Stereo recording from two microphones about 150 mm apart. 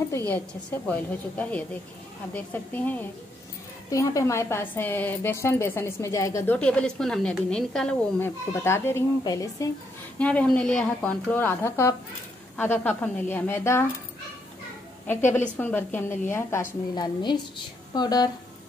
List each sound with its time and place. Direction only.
0.8 s a woman's voice: 10° left (ahead or behind)
8.2 s a woman's voice: 15° left (ahead or behind)
10.1 s a woman's voice: 10° left (ahead or behind)
15.0 s a woman's voice: 15° left (ahead or behind)
16.9 s a woman's voice: 30° left (ahead or behind)